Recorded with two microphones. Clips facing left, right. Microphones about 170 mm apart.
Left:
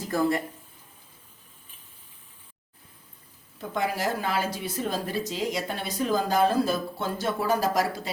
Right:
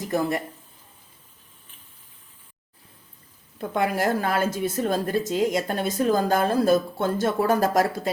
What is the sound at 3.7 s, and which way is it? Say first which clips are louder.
Speech: right 4 dB; 55° right (ahead or behind).